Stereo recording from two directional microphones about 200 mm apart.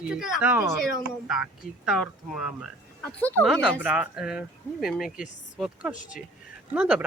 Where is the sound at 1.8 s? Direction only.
Centre (ahead or behind).